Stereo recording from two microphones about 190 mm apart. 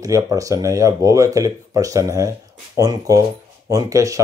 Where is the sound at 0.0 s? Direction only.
15° right (ahead or behind).